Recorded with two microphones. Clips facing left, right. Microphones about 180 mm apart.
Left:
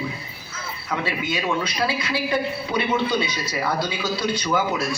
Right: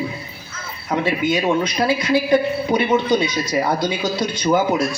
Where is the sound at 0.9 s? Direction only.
30° right (ahead or behind).